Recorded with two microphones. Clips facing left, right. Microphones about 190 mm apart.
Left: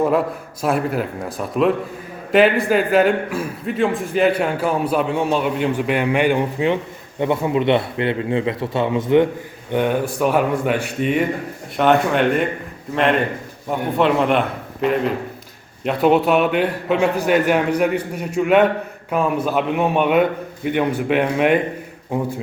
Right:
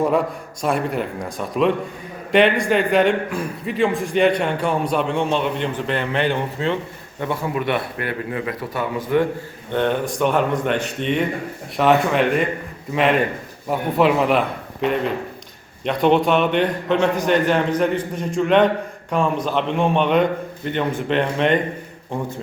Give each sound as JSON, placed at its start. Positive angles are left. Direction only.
{"t": 0.0, "sound": "a man's voice", "side_deg": 0}
{"t": 9.7, "sound": "a man's voice", "side_deg": 10}